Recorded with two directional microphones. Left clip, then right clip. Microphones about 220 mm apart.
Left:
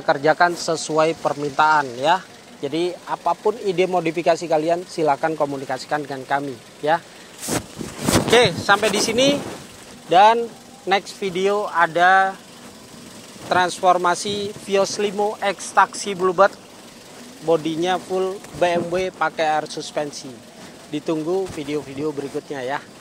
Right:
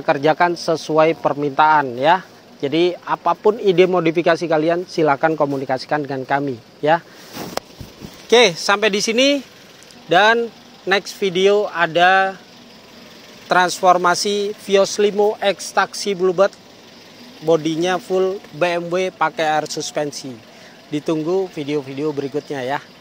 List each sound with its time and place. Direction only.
0.0 s speech: 35° right (ahead or behind)
8.3 s speech: 40° right (ahead or behind)
13.5 s speech: 35° right (ahead or behind)
17.5 s speech: 35° right (ahead or behind)